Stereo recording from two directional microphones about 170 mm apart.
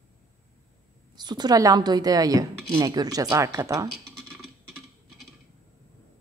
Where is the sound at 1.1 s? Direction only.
25° right (ahead or behind).